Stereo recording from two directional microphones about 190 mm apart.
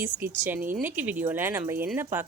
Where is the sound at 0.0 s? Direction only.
10° right (ahead or behind).